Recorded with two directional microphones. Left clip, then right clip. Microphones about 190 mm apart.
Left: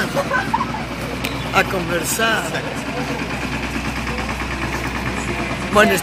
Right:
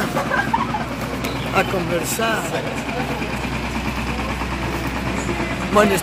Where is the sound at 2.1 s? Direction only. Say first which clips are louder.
Left 4 dB; 5° left (ahead or behind).